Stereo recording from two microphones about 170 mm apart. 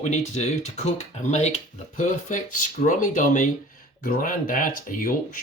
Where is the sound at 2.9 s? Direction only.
50° left (ahead or behind).